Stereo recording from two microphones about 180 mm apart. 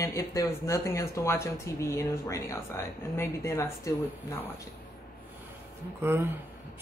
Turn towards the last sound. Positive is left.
turn(degrees=-15)  # may be behind; listen again after turning